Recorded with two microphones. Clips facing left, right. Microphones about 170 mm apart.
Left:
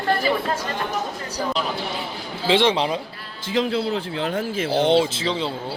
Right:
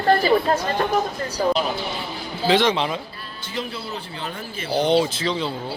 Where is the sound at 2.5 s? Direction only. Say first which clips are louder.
Left 1 dB; 30° left (ahead or behind).